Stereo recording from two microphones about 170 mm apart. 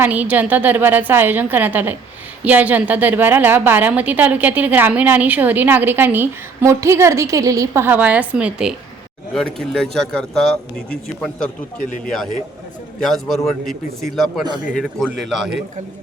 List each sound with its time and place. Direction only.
0.0 s a woman's voice: 10° right (ahead or behind)
11.8 s speech: 50° left (ahead or behind)
13.0 s a man's voice: centre (ahead or behind)